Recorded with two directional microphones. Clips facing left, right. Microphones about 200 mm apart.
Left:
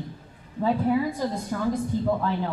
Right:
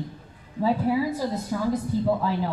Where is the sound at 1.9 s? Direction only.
35° right (ahead or behind).